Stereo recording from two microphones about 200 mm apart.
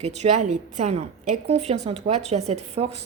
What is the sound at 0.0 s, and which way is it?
A woman's voice, 35° right (ahead or behind).